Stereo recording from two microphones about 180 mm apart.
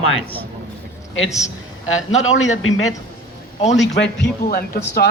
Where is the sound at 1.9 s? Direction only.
90° left.